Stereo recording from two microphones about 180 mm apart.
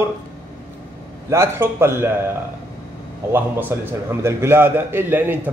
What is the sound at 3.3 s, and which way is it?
Speech, 10° right (ahead or behind).